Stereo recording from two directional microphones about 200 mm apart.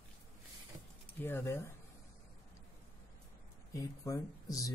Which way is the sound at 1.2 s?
10° left (ahead or behind).